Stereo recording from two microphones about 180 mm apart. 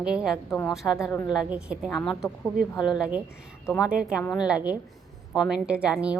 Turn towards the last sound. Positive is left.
turn(degrees=-5)  # may be behind; listen again after turning